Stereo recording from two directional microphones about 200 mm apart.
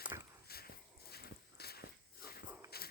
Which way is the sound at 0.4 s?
50° left (ahead or behind).